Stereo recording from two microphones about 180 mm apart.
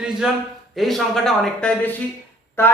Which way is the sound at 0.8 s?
Centre (ahead or behind).